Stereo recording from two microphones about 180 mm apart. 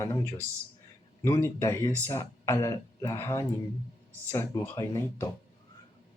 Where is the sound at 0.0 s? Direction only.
15° left (ahead or behind).